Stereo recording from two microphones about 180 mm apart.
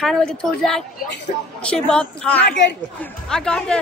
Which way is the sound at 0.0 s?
Centre (ahead or behind).